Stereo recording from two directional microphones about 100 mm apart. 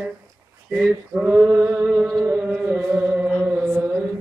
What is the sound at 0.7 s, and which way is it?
Male singing, centre (ahead or behind).